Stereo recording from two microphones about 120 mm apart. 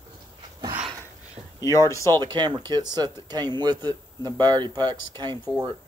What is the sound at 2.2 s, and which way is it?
Speech, 40° right (ahead or behind).